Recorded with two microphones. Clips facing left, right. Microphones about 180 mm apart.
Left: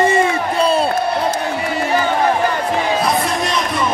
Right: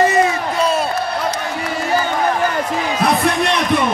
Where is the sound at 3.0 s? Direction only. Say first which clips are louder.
Right 2 dB; 60° right (ahead or behind).